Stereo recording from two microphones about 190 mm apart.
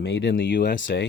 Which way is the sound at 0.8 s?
75° left (ahead or behind).